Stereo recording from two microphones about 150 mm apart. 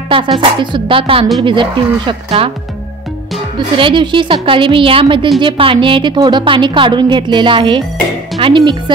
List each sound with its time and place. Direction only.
0.4 s a woman's voice: 35° right (ahead or behind)
3.5 s a woman's voice: 35° right (ahead or behind)